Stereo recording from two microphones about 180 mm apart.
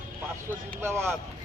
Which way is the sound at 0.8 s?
15° right (ahead or behind).